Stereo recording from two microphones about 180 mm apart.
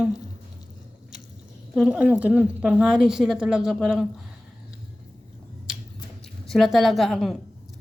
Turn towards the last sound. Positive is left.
turn(degrees=0)  # may be behind; listen again after turning